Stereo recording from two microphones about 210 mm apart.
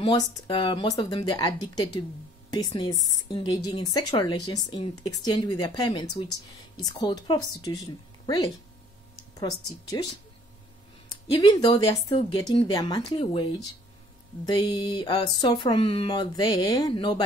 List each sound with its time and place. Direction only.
0.0 s speech: 20° left (ahead or behind)
11.3 s speech: 20° left (ahead or behind)